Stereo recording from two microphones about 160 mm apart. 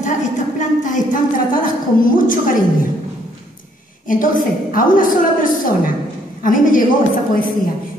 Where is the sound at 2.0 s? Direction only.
60° left (ahead or behind).